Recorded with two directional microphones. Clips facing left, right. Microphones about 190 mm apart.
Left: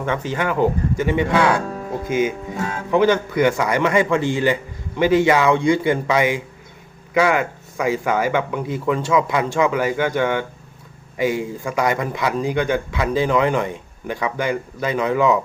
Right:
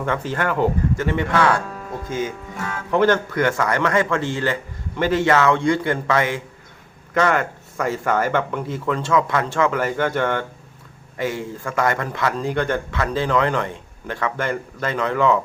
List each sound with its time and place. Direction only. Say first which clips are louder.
0.0 s a man's voice: left 1 dB; 5° left (ahead or behind)
2.9 s a man's voice: left 1 dB; 10° left (ahead or behind)